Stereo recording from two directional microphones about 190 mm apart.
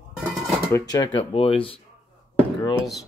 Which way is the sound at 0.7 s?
20° left (ahead or behind).